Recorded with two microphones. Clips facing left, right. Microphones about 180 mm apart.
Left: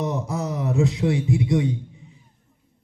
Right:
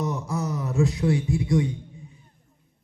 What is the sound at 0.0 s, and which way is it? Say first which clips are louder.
A man's voice: left 2 dB; 20° left (ahead or behind).